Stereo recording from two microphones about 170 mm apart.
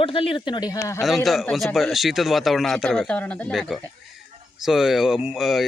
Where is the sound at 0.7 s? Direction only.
20° left (ahead or behind).